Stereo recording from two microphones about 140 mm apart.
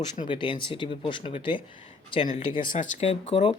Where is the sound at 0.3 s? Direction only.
35° left (ahead or behind).